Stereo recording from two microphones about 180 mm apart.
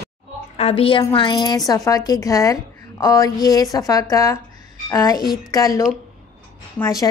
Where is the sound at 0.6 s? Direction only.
35° left (ahead or behind).